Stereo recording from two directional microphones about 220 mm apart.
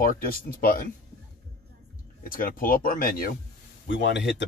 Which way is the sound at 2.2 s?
40° left (ahead or behind).